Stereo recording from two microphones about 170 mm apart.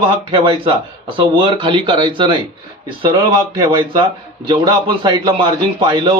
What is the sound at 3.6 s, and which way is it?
Speech, 25° right (ahead or behind).